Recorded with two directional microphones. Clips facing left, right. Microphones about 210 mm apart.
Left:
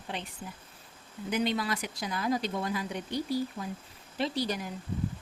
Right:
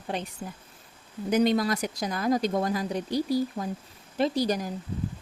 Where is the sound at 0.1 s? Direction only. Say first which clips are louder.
Right 6 dB; 40° right (ahead or behind).